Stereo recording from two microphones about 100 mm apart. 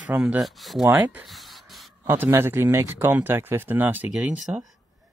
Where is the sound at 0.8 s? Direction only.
15° right (ahead or behind).